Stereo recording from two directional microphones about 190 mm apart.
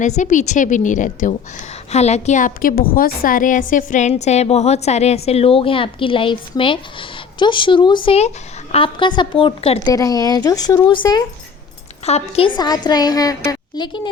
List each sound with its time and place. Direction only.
0.0 s a woman's voice: 40° left (ahead or behind)
9.9 s a woman's voice: 20° left (ahead or behind)
12.0 s a woman's voice: 35° left (ahead or behind)